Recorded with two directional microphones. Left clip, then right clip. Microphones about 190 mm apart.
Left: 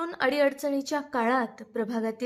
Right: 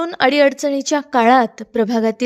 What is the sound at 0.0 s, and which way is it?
A woman's voice, 40° right (ahead or behind).